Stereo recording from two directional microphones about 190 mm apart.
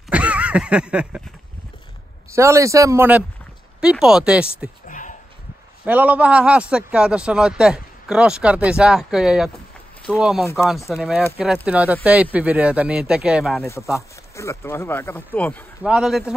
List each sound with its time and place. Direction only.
0.1 s a sound: 5° right (ahead or behind)
2.3 s a man's voice: 15° right (ahead or behind)
4.8 s a sound: 45° left (ahead or behind)
5.9 s a man's voice: 10° right (ahead or behind)
10.4 s speech: 15° left (ahead or behind)
11.0 s a man's voice: centre (ahead or behind)
13.9 s speech: 15° left (ahead or behind)
15.8 s a man's voice: 5° right (ahead or behind)